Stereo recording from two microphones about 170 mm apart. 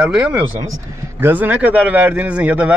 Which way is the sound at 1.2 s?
10° right (ahead or behind).